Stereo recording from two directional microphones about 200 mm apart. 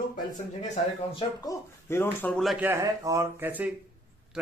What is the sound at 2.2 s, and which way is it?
A man's voice, 5° left (ahead or behind).